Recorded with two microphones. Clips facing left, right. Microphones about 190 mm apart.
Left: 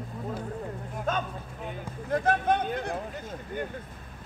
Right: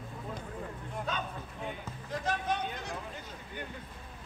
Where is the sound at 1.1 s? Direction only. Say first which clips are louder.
Left 9 dB; 50° left (ahead or behind).